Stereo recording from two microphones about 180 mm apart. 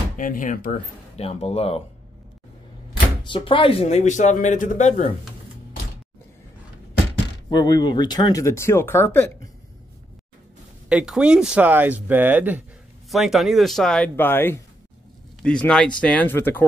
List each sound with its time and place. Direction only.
0.2 s speech: 45° left (ahead or behind)
1.1 s speech: 35° left (ahead or behind)
3.3 s speech: 25° left (ahead or behind)
7.4 s speech: 25° left (ahead or behind)
10.9 s speech: 5° right (ahead or behind); by 16.6 s 10° left (ahead or behind)